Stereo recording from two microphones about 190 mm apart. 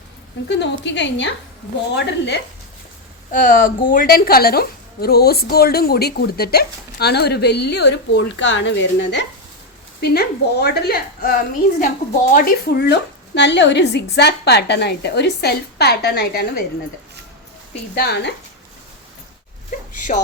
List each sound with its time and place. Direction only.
0.4 s a woman's voice: 65° left (ahead or behind)
3.3 s a woman's voice: 45° left (ahead or behind); by 9.2 s 70° left (ahead or behind)
10.0 s a woman's voice: 60° left (ahead or behind)
17.9 s a woman's voice: 60° left (ahead or behind)